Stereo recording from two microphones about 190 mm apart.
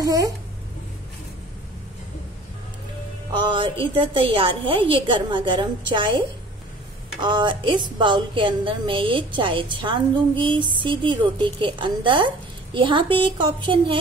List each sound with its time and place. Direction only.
0.0 s a woman's voice: 20° right (ahead or behind)
3.3 s a woman's voice: 25° right (ahead or behind)
7.2 s a woman's voice: 25° right (ahead or behind)